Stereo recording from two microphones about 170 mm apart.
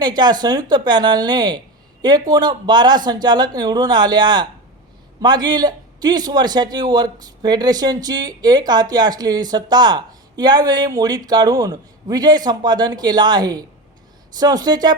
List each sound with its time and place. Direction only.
0.0 s a man's voice: 25° right (ahead or behind)